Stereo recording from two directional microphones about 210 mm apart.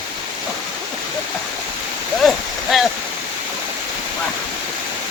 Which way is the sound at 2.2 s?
Centre (ahead or behind).